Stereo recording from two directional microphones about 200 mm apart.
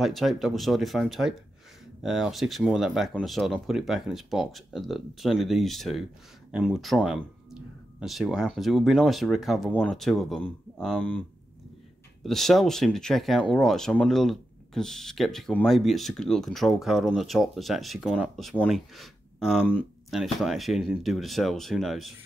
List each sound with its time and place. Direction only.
0.0 s speech: centre (ahead or behind)